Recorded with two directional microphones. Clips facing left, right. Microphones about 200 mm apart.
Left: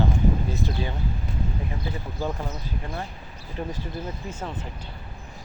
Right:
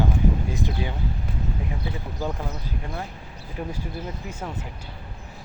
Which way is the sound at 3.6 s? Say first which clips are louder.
Even; 10° right (ahead or behind).